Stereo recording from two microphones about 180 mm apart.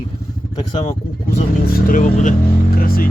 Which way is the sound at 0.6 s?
35° left (ahead or behind).